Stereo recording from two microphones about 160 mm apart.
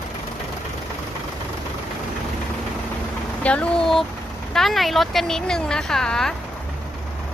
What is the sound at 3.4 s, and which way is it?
Speech, 10° left (ahead or behind).